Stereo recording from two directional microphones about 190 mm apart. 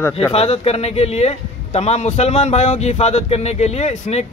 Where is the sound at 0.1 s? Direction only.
30° left (ahead or behind).